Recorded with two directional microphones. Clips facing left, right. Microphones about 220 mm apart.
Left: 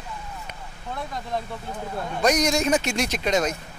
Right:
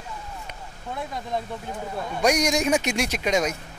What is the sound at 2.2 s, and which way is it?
Speech, 10° right (ahead or behind).